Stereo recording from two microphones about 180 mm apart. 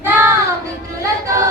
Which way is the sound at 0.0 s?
10° right (ahead or behind).